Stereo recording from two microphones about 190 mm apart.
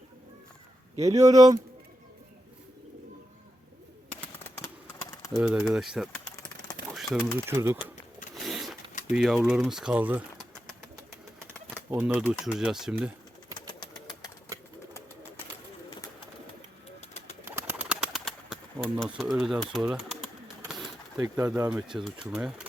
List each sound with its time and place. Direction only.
0.9 s speech: 15° right (ahead or behind)
4.2 s bird: 15° left (ahead or behind)
5.4 s speech: 5° right (ahead or behind)
6.9 s pigeon: centre (ahead or behind)
7.3 s speech: 15° right (ahead or behind)
8.4 s printer: centre (ahead or behind)
9.1 s speech: 5° right (ahead or behind)
11.9 s speech: 10° right (ahead or behind)
17.0 s bird: 35° left (ahead or behind)
17.4 s bird: 10° right (ahead or behind)
21.2 s speech: 20° right (ahead or behind)
21.7 s speech: 5° right (ahead or behind)